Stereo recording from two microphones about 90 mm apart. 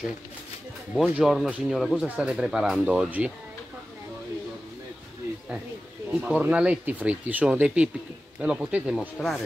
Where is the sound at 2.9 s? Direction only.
15° right (ahead or behind).